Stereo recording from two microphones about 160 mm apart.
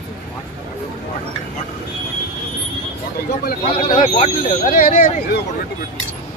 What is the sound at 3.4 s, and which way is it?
Speech, 55° left (ahead or behind).